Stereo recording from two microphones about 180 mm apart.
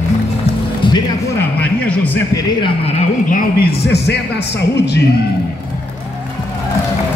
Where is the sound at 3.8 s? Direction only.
65° left (ahead or behind).